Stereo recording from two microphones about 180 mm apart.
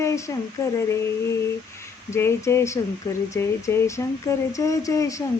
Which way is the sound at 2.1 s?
15° left (ahead or behind).